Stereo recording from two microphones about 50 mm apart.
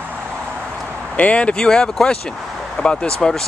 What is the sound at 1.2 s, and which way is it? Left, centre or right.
Speech, left.